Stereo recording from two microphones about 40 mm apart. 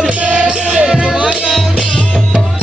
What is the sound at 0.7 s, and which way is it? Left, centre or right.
Music, centre.